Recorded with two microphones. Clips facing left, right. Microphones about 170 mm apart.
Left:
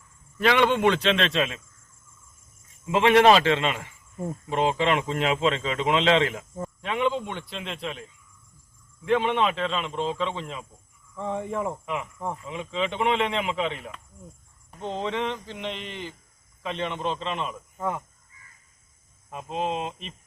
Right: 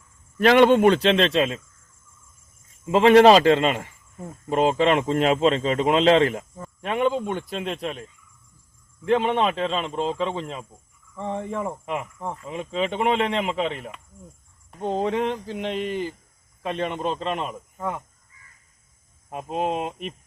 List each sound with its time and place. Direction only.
0.3 s speech: 45° right (ahead or behind)
2.9 s speech: 35° right (ahead or behind)
9.0 s speech: 40° right (ahead or behind)
11.2 s cricket: 5° left (ahead or behind)
12.5 s speech: 40° right (ahead or behind)
14.8 s speech: 45° right (ahead or behind)
19.3 s speech: 50° right (ahead or behind)